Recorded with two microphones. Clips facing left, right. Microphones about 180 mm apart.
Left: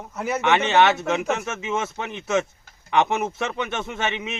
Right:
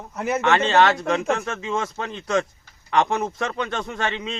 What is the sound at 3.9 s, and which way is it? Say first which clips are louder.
Speech: left 1 dB; 20° left (ahead or behind).